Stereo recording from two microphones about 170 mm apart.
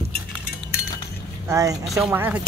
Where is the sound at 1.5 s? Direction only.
20° right (ahead or behind).